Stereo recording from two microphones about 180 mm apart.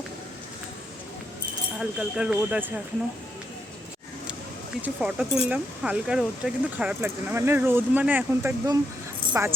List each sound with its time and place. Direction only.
1.8 s speech: 5° right (ahead or behind)
4.8 s speech: 5° right (ahead or behind)